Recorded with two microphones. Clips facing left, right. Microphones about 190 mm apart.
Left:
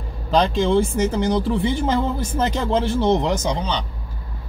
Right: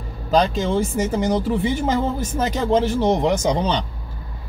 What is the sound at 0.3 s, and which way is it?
Speech, centre (ahead or behind).